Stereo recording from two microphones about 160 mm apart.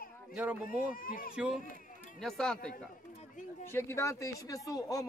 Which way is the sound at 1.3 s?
5° right (ahead or behind).